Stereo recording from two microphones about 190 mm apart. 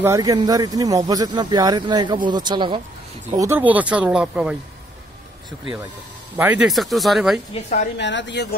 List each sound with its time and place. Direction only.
0.0 s speech: 15° right (ahead or behind)
3.3 s speech: 15° right (ahead or behind)
6.3 s speech: 10° right (ahead or behind)
8.0 s speech: 70° left (ahead or behind)